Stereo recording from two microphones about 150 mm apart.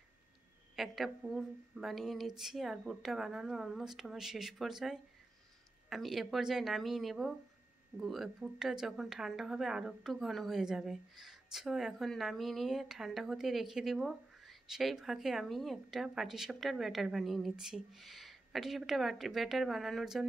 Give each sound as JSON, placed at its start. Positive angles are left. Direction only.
{"t": 0.7, "sound": "speech", "side_deg": 0}